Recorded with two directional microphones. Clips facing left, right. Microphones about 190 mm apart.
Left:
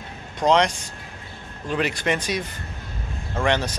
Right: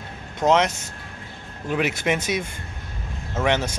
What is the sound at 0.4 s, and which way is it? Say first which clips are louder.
Speech: even; 5° right (ahead or behind).